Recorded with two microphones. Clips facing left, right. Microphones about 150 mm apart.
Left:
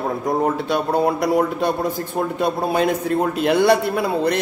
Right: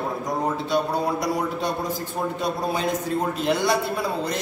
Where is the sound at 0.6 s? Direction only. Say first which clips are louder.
Left 4 dB; 60° left (ahead or behind).